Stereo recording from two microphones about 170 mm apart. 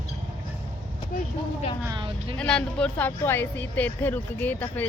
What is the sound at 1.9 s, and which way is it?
Speech, 30° right (ahead or behind).